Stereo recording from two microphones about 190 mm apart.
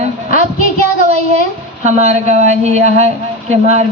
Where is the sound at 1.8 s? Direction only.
35° right (ahead or behind).